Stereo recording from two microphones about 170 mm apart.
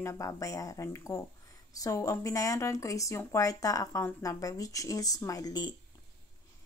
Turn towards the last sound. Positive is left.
turn(degrees=25)  # may be behind; listen again after turning